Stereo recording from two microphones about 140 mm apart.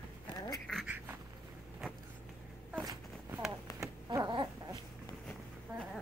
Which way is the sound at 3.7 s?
25° right (ahead or behind).